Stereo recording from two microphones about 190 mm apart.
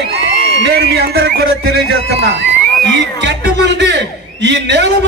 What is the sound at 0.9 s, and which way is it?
Speech, 60° right (ahead or behind).